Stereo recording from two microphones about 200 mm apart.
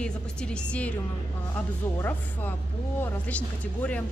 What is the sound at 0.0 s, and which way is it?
Speech, 5° left (ahead or behind).